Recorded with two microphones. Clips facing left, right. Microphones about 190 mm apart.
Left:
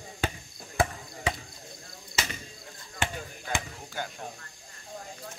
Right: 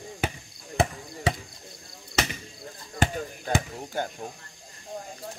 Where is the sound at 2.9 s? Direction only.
40° right (ahead or behind).